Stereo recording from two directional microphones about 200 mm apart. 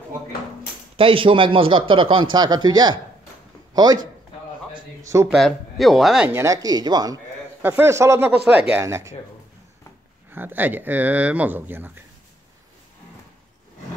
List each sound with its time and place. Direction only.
0.9 s speech: 25° right (ahead or behind)
4.7 s a sound: 15° right (ahead or behind)
5.3 s speech: centre (ahead or behind)
10.3 s speech: 10° right (ahead or behind)